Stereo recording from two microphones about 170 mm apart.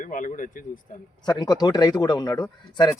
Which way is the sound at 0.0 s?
50° left (ahead or behind).